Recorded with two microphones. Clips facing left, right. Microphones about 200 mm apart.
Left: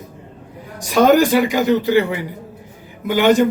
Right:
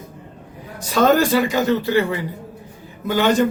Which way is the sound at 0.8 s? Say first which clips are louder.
Left 3 dB; 15° left (ahead or behind).